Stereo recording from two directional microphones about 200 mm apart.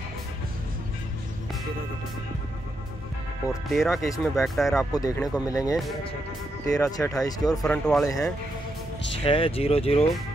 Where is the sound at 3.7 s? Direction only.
Centre (ahead or behind).